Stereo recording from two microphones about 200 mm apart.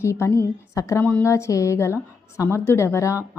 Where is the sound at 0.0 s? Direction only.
15° left (ahead or behind).